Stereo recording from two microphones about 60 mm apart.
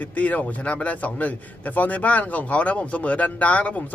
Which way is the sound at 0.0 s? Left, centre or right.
Left.